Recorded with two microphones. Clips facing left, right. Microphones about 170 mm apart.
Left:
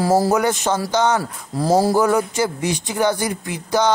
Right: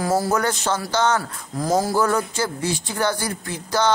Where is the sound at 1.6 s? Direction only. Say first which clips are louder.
Left 4 dB; 30° left (ahead or behind).